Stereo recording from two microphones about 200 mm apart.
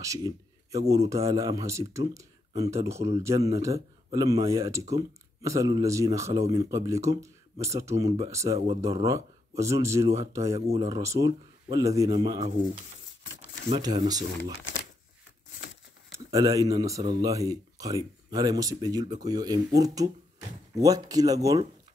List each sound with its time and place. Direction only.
0.0 s speech: 15° right (ahead or behind)
2.9 s speech: 35° right (ahead or behind)
3.2 s speech: 15° right (ahead or behind)
13.7 s speech: 20° right (ahead or behind)
16.1 s speech: 15° right (ahead or behind)